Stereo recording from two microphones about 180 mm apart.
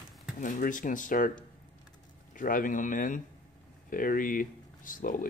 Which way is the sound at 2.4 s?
50° left (ahead or behind).